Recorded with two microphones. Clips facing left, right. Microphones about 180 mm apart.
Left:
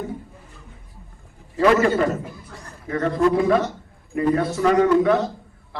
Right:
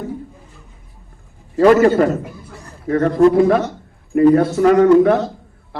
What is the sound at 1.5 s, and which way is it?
A man's voice, 40° right (ahead or behind).